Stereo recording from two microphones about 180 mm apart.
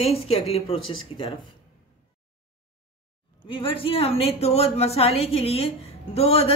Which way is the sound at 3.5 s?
30° left (ahead or behind).